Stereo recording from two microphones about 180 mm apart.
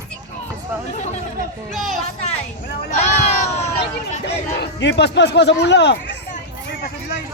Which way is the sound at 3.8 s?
70° left (ahead or behind).